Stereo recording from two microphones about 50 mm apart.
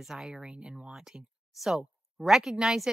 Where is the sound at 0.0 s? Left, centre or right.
Centre.